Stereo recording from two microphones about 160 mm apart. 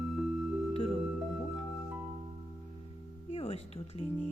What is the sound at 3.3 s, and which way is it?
Music, 35° left (ahead or behind).